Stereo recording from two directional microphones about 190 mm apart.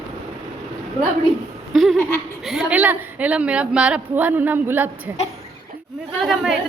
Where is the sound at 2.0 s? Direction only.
10° left (ahead or behind).